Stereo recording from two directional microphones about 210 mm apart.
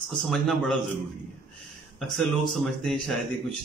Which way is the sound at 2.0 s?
Centre (ahead or behind).